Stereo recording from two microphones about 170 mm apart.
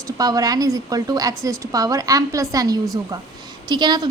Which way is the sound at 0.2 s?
20° right (ahead or behind).